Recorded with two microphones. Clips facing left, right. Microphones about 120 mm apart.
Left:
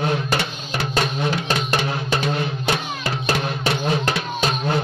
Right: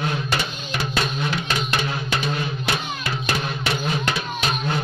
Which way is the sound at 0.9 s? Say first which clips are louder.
Left 4 dB; 35° left (ahead or behind).